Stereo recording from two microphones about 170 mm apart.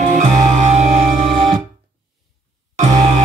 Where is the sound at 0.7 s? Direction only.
40° right (ahead or behind).